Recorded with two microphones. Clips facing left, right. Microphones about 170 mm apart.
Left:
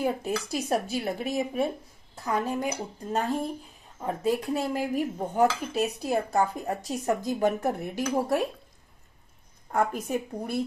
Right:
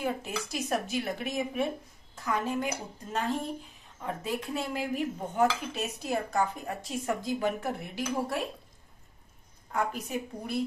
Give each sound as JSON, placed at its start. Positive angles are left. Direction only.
{"t": 0.0, "sound": "cutlery", "side_deg": 35}
{"t": 7.3, "sound": "a woman's voice", "side_deg": 45}
{"t": 9.7, "sound": "a woman's voice", "side_deg": 50}